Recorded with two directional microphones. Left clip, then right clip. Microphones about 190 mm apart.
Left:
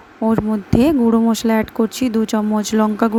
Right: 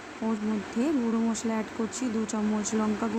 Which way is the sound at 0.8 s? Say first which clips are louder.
Left 14 dB; 50° left (ahead or behind).